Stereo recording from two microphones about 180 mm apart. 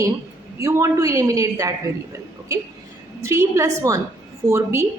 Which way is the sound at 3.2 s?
15° right (ahead or behind).